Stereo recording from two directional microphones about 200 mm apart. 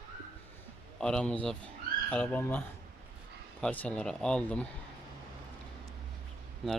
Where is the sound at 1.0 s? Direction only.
5° left (ahead or behind).